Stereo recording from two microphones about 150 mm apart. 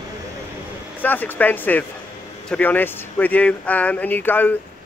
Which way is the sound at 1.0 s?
10° left (ahead or behind).